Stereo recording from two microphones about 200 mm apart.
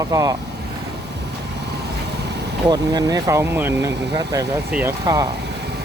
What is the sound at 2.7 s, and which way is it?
Speech, 20° right (ahead or behind).